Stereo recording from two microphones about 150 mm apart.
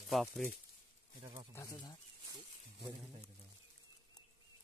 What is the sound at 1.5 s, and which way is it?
Speech, 25° left (ahead or behind).